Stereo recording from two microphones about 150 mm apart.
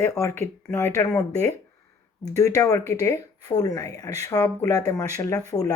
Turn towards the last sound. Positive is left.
turn(degrees=25)  # may be behind; listen again after turning